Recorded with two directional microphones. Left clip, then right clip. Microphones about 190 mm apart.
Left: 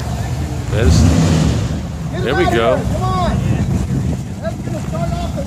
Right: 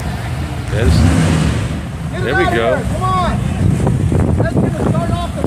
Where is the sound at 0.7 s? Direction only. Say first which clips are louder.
Left 1 dB; 10° left (ahead or behind).